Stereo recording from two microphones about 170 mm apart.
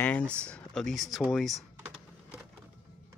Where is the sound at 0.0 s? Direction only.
10° left (ahead or behind).